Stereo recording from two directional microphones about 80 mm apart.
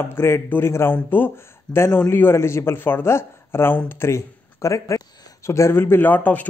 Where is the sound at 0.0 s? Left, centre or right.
Left.